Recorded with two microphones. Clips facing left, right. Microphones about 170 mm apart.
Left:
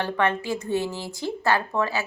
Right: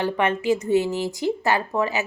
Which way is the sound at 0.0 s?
15° right (ahead or behind).